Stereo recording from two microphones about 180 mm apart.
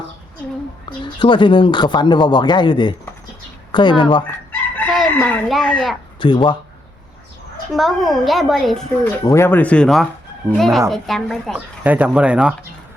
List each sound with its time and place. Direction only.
0.9 s speech: 25° left (ahead or behind)
5.1 s speech: 10° left (ahead or behind)
6.1 s speech: 25° left (ahead or behind)
7.7 s speech: centre (ahead or behind)
9.2 s speech: 15° left (ahead or behind)
11.8 s speech: 10° right (ahead or behind)